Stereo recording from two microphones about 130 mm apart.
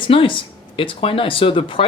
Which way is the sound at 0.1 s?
40° left (ahead or behind).